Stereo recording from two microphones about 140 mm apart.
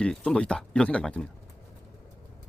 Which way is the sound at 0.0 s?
5° left (ahead or behind).